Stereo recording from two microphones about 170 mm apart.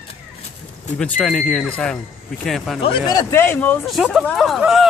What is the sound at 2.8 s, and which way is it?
Speech, 25° left (ahead or behind).